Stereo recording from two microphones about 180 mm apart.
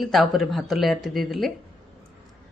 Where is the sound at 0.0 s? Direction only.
Centre (ahead or behind).